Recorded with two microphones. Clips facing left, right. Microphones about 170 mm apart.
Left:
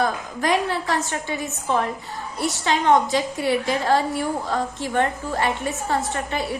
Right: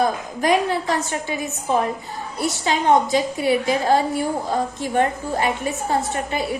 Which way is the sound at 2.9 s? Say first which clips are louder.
Right 2 dB; 15° right (ahead or behind).